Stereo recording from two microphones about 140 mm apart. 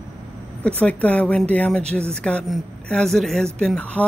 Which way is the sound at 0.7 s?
10° left (ahead or behind).